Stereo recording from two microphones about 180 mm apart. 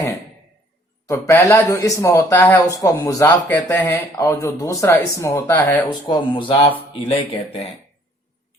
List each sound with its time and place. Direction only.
1.0 s speech: 15° left (ahead or behind)
5.9 s speech: 25° left (ahead or behind)